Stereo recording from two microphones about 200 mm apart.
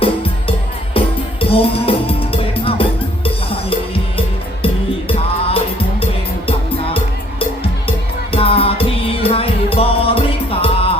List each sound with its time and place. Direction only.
0.0 s music: 25° left (ahead or behind)
5.0 s music: 30° left (ahead or behind)